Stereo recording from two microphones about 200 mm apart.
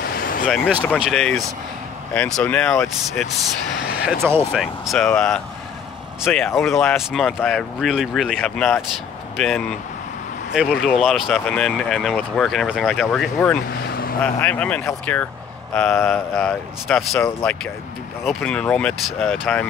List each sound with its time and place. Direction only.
0.0 s vehicle: 45° left (ahead or behind)
0.5 s speech: 5° right (ahead or behind)
4.0 s speech: 10° right (ahead or behind)